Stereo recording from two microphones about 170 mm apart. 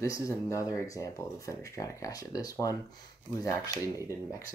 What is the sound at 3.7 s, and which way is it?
Speech, 15° right (ahead or behind).